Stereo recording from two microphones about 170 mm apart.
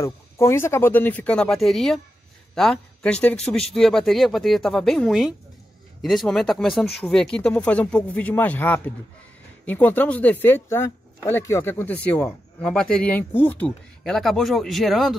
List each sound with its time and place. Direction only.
0.0 s speech: 15° left (ahead or behind); by 15.1 s centre (ahead or behind)